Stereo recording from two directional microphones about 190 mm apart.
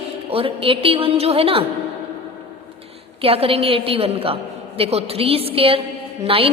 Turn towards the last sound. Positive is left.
turn(degrees=-30)  # may be behind; listen again after turning